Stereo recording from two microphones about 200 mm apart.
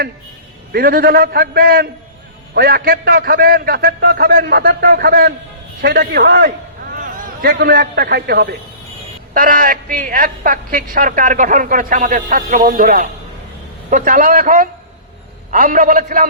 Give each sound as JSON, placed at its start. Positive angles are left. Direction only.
{"t": 0.7, "sound": "a man's voice", "side_deg": -50}